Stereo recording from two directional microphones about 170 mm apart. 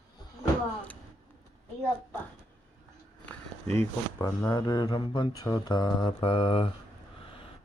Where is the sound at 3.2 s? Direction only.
15° left (ahead or behind); by 6.7 s 35° left (ahead or behind).